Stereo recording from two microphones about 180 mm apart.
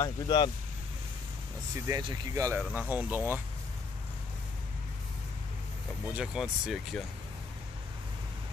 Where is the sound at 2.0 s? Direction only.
25° right (ahead or behind).